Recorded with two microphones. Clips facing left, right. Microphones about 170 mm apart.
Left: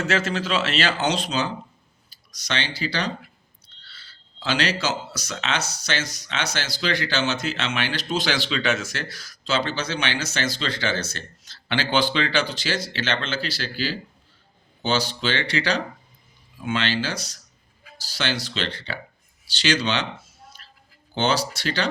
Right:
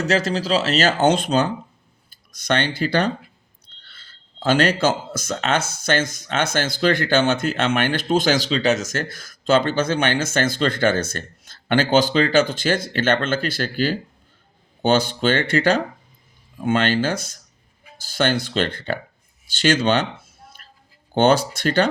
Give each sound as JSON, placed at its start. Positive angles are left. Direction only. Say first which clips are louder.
{"t": 0.0, "sound": "speech", "louder": "right 4 dB", "side_deg": -40}
{"t": 19.5, "sound": "a sound", "louder": "right 6 dB", "side_deg": -50}
{"t": 21.1, "sound": "speech", "louder": "right 7 dB", "side_deg": -55}